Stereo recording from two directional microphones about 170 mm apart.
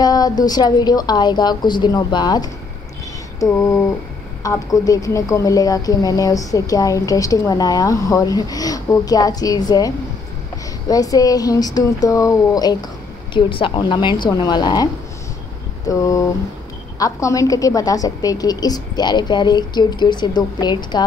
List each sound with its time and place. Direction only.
0.0 s a woman's voice: 20° left (ahead or behind)
15.9 s a woman's voice: 20° left (ahead or behind)